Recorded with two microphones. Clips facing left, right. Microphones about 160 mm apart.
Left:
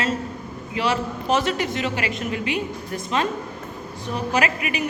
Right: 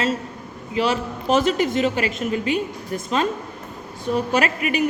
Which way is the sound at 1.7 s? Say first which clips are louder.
Right 4 dB; 40° right (ahead or behind).